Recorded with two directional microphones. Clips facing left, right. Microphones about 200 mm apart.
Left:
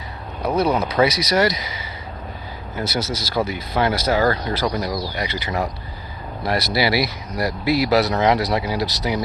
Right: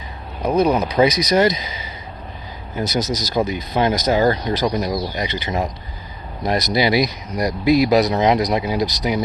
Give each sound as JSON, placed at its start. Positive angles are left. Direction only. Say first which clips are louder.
{"t": 0.4, "sound": "speech", "louder": "right 3 dB", "side_deg": -15}